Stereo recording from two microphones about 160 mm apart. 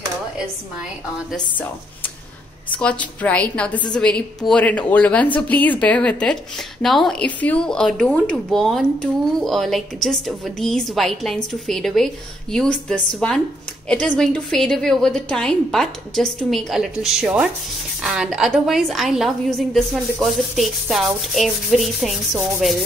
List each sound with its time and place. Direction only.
2.8 s speech: 10° left (ahead or behind)